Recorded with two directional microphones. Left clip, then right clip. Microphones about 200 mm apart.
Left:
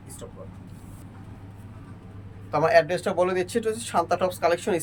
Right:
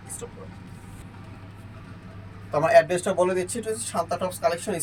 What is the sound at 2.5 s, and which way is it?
Speech, centre (ahead or behind).